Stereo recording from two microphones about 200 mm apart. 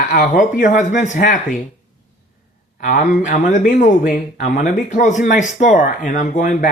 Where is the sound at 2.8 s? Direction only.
40° left (ahead or behind).